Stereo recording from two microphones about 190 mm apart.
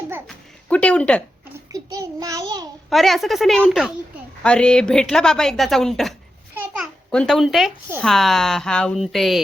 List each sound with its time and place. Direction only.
0.3 s a sound: 5° left (ahead or behind)
1.7 s a child's voice: 20° right (ahead or behind)
2.9 s a woman's voice: centre (ahead or behind)
6.5 s babbling: 10° right (ahead or behind)
7.1 s a woman's voice: 5° left (ahead or behind)